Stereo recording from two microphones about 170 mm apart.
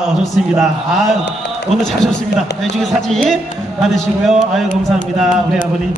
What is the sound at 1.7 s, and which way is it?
Music, centre (ahead or behind).